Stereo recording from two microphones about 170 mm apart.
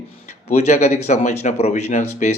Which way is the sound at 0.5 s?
40° left (ahead or behind).